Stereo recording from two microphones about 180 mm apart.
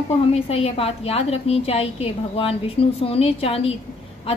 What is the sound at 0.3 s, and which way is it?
A woman's voice, 35° left (ahead or behind).